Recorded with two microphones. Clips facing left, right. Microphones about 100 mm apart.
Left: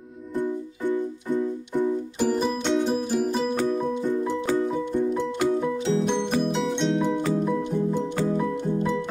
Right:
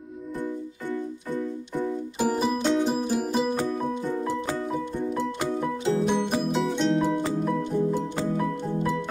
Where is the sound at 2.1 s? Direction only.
5° right (ahead or behind).